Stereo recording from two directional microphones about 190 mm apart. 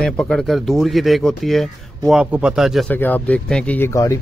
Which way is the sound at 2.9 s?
10° left (ahead or behind).